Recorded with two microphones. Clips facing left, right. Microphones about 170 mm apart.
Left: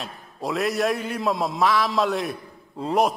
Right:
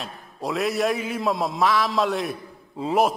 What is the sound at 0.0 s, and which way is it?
A man's voice, centre (ahead or behind).